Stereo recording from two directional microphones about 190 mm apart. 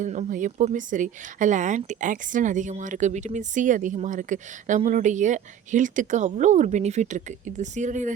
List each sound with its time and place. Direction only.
0.0 s speech: 40° right (ahead or behind)